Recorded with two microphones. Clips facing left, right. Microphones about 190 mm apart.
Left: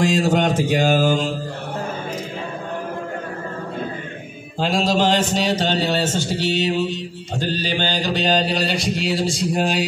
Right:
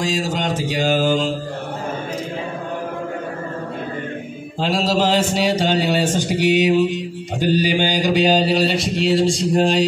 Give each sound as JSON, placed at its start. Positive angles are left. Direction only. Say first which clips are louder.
{"t": 0.0, "sound": "mantra", "louder": "left 4 dB", "side_deg": 55}
{"t": 4.6, "sound": "a man's voice", "louder": "even", "side_deg": 0}